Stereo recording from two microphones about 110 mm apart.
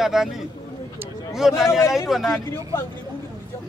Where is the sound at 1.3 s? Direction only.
5° right (ahead or behind).